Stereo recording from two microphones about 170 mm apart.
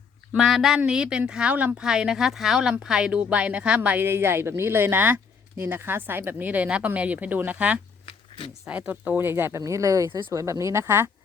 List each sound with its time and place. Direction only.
0.3 s speech: centre (ahead or behind)